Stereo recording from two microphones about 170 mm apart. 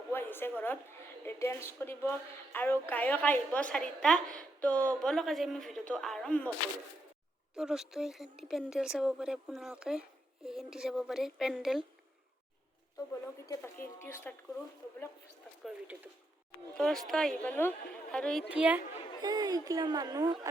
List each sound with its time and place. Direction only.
0.1 s a sound: 15° left (ahead or behind)
1.2 s a woman's voice: 15° left (ahead or behind)
7.5 s speech: 5° right (ahead or behind)
13.5 s a woman's voice: 15° left (ahead or behind)
16.7 s speech: centre (ahead or behind)
18.4 s a woman's voice: 5° right (ahead or behind)
19.2 s speech: 20° right (ahead or behind)